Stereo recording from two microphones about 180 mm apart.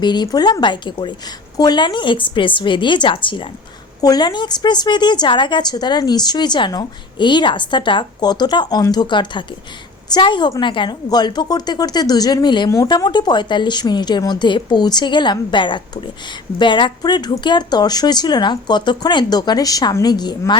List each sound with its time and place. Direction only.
0.0 s a woman's voice: 25° left (ahead or behind)